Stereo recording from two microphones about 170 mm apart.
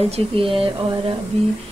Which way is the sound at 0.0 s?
35° right (ahead or behind).